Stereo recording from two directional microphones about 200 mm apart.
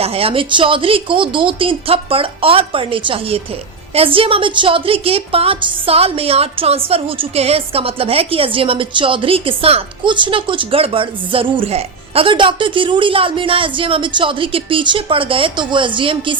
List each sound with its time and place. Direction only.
0.0 s a woman's voice: 30° right (ahead or behind)